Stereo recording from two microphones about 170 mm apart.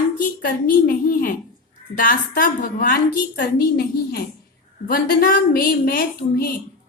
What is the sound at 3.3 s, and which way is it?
A woman's voice, 65° left (ahead or behind).